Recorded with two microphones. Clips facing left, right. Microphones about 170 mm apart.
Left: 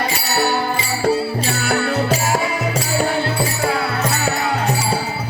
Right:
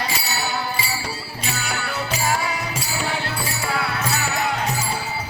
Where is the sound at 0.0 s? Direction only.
60° left (ahead or behind).